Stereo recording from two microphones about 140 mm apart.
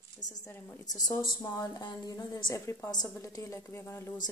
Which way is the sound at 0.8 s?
25° left (ahead or behind).